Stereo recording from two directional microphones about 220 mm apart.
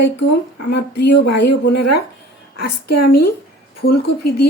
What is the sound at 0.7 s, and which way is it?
A woman's voice, 50° left (ahead or behind).